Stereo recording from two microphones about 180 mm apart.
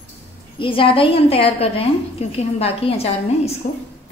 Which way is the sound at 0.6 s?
30° left (ahead or behind).